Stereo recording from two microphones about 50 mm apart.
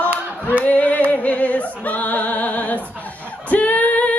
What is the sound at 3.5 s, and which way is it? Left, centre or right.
Female singing, left.